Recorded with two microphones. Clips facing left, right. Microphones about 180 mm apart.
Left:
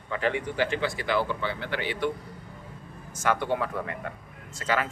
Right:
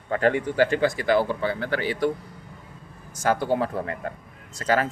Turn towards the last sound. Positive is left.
turn(degrees=-40)  # may be behind; listen again after turning